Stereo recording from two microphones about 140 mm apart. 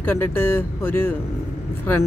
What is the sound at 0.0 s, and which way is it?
Speech, 15° left (ahead or behind).